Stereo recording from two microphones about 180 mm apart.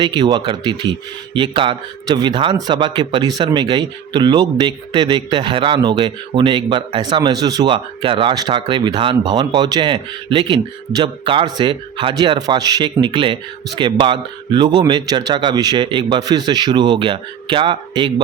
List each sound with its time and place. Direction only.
0.0 s speech: 25° right (ahead or behind)